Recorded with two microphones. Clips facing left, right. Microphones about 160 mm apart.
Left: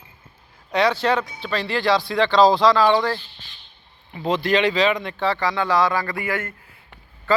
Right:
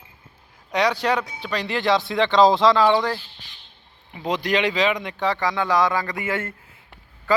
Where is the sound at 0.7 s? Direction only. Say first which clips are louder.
Left 2 dB; 15° right (ahead or behind).